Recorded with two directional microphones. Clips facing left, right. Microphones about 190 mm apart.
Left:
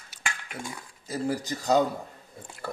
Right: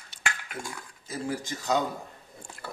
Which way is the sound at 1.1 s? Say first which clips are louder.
Left 3 dB; 40° left (ahead or behind).